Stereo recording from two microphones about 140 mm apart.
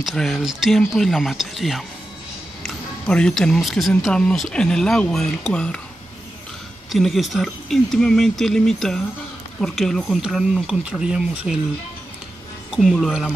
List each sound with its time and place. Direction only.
0.0 s speech: centre (ahead or behind)
6.9 s speech: centre (ahead or behind)
12.7 s speech: centre (ahead or behind)